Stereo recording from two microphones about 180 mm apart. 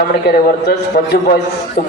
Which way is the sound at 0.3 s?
60° left (ahead or behind).